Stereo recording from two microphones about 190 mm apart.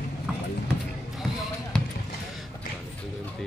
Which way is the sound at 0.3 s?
5° right (ahead or behind).